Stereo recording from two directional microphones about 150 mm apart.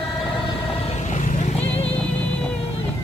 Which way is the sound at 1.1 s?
55° left (ahead or behind).